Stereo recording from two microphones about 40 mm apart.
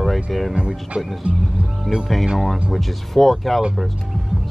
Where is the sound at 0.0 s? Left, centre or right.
Centre.